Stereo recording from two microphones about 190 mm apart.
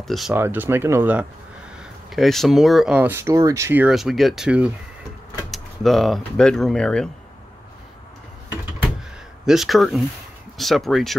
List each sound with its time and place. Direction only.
0.3 s speech: 10° right (ahead or behind)
2.0 s speech: centre (ahead or behind)
9.5 s speech: centre (ahead or behind)